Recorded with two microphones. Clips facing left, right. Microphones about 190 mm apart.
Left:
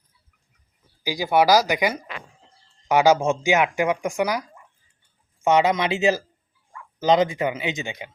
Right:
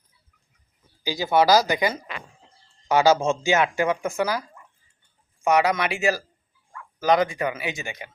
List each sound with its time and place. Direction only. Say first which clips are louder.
1.0 s speech: left 1 dB; 15° left (ahead or behind)